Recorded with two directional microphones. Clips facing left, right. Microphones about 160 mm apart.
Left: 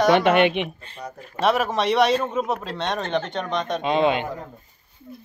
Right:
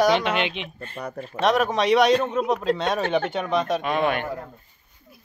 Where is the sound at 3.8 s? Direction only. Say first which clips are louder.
Left 3 dB; 20° left (ahead or behind).